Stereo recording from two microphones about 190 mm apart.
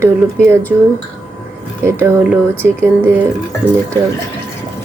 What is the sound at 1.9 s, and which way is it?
Speech, 10° right (ahead or behind).